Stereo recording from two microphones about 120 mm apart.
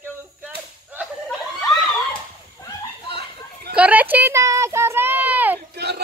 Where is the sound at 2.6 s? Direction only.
25° left (ahead or behind).